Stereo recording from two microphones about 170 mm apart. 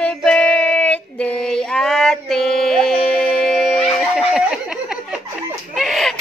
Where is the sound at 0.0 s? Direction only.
5° left (ahead or behind).